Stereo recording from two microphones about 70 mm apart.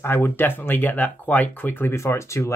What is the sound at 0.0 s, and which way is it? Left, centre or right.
Speech, left.